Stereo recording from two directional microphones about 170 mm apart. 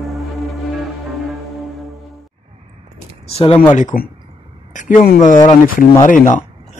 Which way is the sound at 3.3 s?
35° left (ahead or behind).